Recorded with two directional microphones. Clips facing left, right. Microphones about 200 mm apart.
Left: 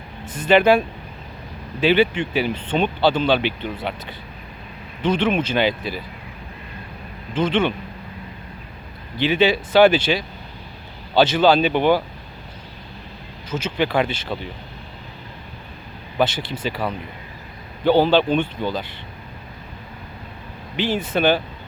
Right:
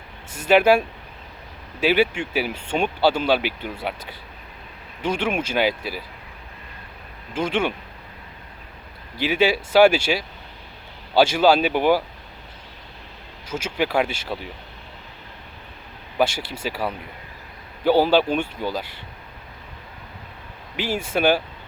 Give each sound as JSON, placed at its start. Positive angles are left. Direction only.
{"t": 0.3, "sound": "speech", "side_deg": -10}
{"t": 7.3, "sound": "speech", "side_deg": -10}
{"t": 9.1, "sound": "speech", "side_deg": -10}
{"t": 13.5, "sound": "speech", "side_deg": -10}
{"t": 16.1, "sound": "speech", "side_deg": -10}
{"t": 20.7, "sound": "speech", "side_deg": -10}